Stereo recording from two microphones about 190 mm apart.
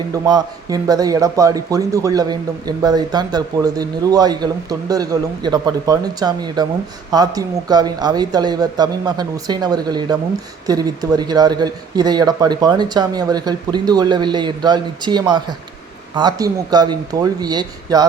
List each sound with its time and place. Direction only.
0.1 s speech: 20° right (ahead or behind)